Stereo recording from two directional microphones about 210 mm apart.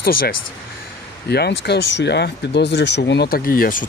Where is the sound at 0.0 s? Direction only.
45° left (ahead or behind).